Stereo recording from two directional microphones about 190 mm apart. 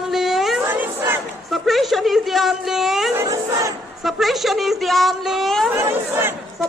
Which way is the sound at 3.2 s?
15° right (ahead or behind).